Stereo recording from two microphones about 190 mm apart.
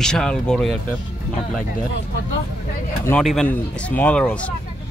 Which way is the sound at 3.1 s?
5° left (ahead or behind).